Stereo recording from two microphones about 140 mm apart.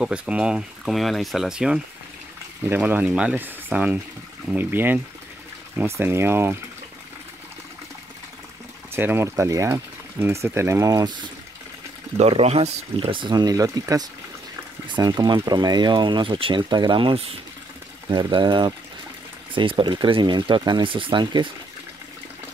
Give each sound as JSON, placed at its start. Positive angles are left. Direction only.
{"t": 0.0, "sound": "speech", "side_deg": -10}
{"t": 8.9, "sound": "speech", "side_deg": -15}
{"t": 12.2, "sound": "speech", "side_deg": -50}
{"t": 18.1, "sound": "speech", "side_deg": -35}